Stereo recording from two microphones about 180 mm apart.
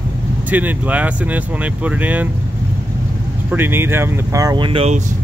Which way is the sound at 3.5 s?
10° right (ahead or behind).